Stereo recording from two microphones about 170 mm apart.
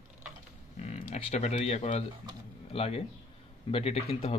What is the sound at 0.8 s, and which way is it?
Speech, 40° left (ahead or behind).